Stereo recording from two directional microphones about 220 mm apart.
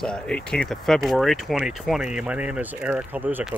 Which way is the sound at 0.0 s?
5° left (ahead or behind).